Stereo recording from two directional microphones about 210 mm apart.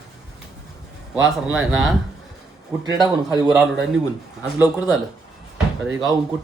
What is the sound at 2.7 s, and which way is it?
Speech, 20° right (ahead or behind).